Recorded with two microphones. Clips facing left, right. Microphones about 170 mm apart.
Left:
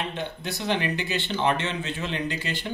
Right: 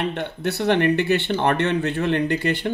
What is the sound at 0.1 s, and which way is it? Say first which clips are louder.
Speech: right 6 dB; 65° right (ahead or behind).